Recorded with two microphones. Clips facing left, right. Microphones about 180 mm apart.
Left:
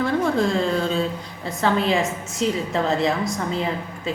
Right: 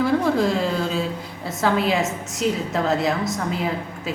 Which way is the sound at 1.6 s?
5° right (ahead or behind).